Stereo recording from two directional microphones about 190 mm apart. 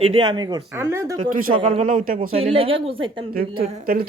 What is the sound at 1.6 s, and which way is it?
Speech, 40° right (ahead or behind).